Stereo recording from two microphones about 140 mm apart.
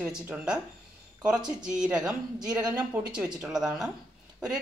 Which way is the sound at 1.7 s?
5° right (ahead or behind).